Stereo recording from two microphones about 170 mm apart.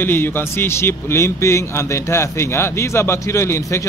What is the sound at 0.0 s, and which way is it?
A man's voice, 10° left (ahead or behind).